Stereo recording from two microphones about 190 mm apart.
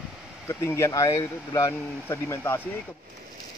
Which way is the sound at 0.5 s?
15° left (ahead or behind).